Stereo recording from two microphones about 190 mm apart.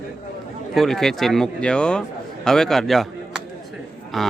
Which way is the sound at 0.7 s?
Centre (ahead or behind).